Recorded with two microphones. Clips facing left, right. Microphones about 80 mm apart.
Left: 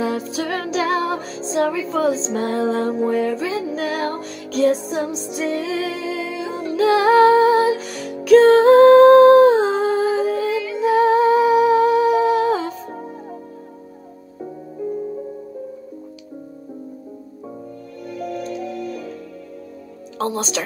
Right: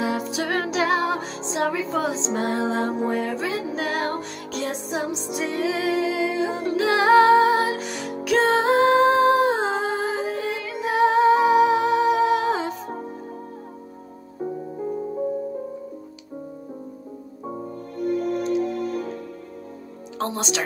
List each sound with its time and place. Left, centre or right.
0.2 s music: right
6.3 s music: right
6.8 s music: right
8.2 s music: centre
10.5 s music: right
11.0 s humming: right
12.4 s music: right
17.9 s music: right
20.2 s music: right